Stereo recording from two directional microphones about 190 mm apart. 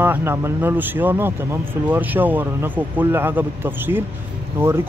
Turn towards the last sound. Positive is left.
turn(degrees=-15)  # may be behind; listen again after turning